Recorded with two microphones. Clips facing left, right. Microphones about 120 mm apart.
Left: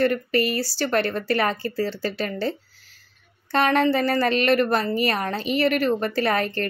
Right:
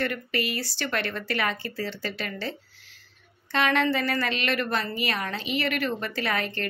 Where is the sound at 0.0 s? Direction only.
40° left (ahead or behind).